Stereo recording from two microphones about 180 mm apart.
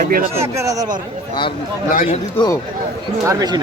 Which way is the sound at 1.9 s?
50° left (ahead or behind).